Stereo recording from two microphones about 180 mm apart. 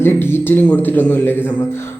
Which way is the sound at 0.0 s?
10° left (ahead or behind).